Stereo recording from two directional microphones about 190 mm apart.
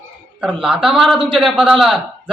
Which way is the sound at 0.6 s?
5° right (ahead or behind).